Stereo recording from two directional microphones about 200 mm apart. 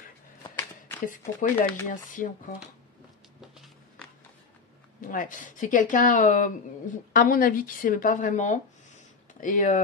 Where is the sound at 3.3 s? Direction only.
Centre (ahead or behind).